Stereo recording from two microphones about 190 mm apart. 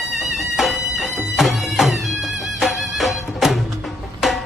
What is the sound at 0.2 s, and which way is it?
Music, centre (ahead or behind).